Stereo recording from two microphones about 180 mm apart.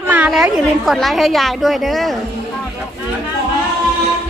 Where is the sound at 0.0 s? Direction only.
10° right (ahead or behind).